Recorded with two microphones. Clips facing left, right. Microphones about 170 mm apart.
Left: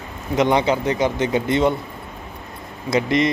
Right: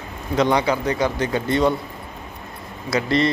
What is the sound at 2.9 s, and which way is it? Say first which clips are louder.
Speech: left 1 dB; 15° left (ahead or behind).